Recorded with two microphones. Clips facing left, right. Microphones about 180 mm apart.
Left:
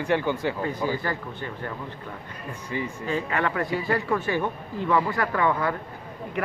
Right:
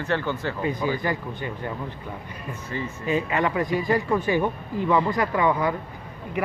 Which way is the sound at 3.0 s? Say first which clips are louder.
Right 4 dB; 15° right (ahead or behind).